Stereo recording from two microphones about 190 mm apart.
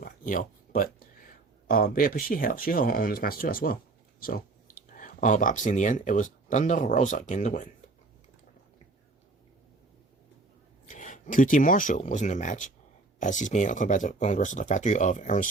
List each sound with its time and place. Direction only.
0.0 s speech: 45° left (ahead or behind)
10.8 s speech: 40° left (ahead or behind)